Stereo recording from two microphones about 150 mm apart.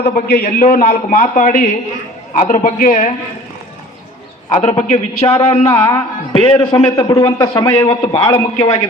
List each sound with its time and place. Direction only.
0.0 s a man's voice: 90° left; by 3.1 s 65° left (ahead or behind)
4.5 s a man's voice: 50° left (ahead or behind)
6.9 s a man's voice: 20° left (ahead or behind)